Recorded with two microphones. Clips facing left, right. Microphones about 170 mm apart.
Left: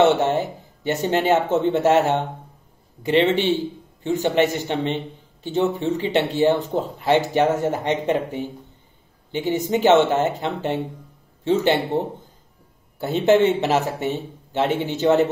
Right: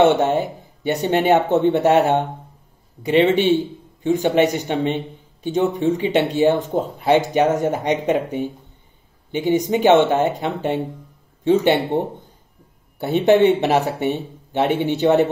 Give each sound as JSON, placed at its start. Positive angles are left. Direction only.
{"t": 0.0, "sound": "speech", "side_deg": -20}
{"t": 13.0, "sound": "speech", "side_deg": -15}